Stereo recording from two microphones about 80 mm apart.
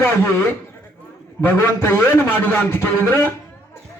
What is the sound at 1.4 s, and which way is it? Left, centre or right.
A man's voice, left.